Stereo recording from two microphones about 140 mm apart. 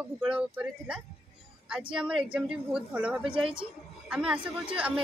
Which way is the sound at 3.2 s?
35° right (ahead or behind).